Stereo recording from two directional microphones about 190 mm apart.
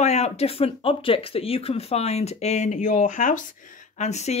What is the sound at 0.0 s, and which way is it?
Speech, 35° left (ahead or behind).